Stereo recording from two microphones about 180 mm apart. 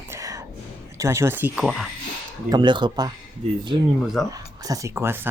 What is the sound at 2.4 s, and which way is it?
Speech, 25° right (ahead or behind).